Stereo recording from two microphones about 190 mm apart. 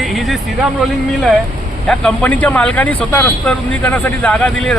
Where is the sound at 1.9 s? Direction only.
5° left (ahead or behind).